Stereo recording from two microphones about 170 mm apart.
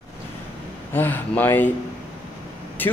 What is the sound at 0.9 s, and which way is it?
Speech, 10° left (ahead or behind).